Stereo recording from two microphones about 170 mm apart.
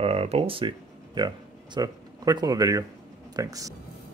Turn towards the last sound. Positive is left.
turn(degrees=-20)  # may be behind; listen again after turning